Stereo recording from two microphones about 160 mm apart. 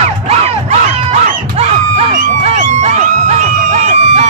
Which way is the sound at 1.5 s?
40° right (ahead or behind).